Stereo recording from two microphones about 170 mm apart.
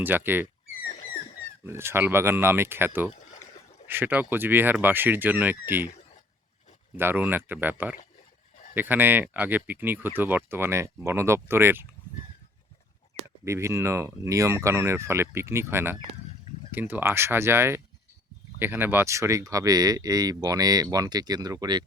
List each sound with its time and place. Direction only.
0.0 s speech: 10° right (ahead or behind)
1.6 s speech: 15° right (ahead or behind)
6.9 s speech: 10° right (ahead or behind)
13.4 s speech: 15° right (ahead or behind)